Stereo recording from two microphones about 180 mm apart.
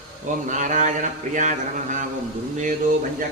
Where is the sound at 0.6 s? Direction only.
45° right (ahead or behind).